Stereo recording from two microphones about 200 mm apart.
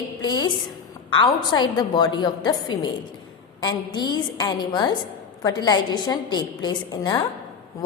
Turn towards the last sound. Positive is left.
turn(degrees=20)  # may be behind; listen again after turning